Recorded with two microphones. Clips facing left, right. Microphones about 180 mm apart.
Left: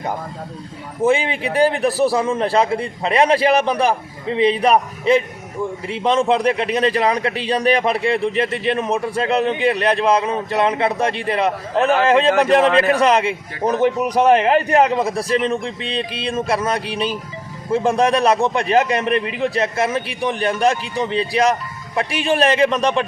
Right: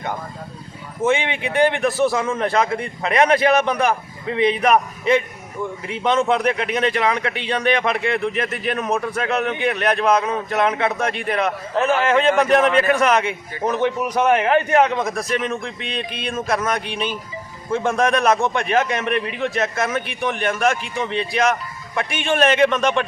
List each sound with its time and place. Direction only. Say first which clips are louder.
1.0 s a man's voice: left 3 dB; 35° left (ahead or behind)